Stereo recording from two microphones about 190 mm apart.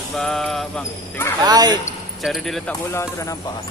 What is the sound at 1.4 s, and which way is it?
Speech, 20° right (ahead or behind).